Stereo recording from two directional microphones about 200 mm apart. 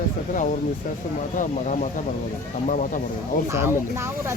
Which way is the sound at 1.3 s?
40° left (ahead or behind).